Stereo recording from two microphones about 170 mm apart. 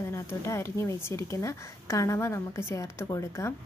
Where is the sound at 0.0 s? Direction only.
15° left (ahead or behind).